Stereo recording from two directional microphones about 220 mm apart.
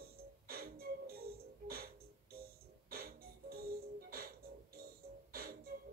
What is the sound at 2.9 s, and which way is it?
Music, 45° right (ahead or behind).